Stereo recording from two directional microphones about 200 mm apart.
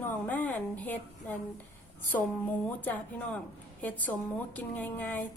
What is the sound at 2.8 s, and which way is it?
Speech, 10° left (ahead or behind).